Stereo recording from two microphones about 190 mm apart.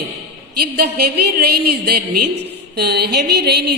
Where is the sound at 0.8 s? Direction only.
55° right (ahead or behind).